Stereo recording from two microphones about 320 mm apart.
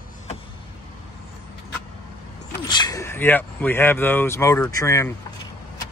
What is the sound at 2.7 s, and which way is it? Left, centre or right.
Speech, centre.